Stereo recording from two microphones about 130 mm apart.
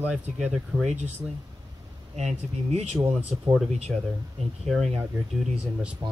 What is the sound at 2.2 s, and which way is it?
Speech, 60° right (ahead or behind).